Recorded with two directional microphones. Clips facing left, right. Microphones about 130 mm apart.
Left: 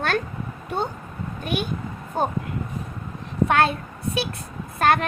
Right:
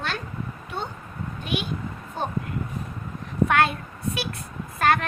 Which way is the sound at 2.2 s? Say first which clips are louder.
Left 6 dB; 45° left (ahead or behind).